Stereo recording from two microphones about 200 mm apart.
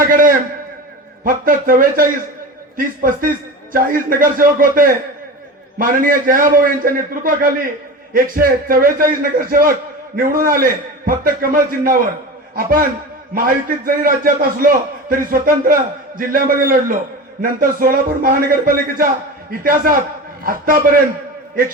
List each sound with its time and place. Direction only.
0.0 s a sound: 45° right (ahead or behind)
1.2 s a man's voice: 45° right (ahead or behind)
13.3 s a man's voice: 45° right (ahead or behind)